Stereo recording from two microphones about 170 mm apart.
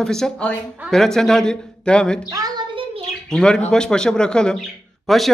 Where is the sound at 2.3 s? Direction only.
25° right (ahead or behind).